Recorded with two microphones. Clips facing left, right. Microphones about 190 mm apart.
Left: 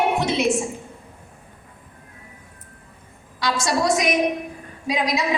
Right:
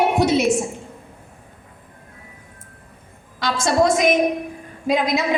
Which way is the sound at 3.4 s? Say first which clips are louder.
Right 4 dB; 55° right (ahead or behind).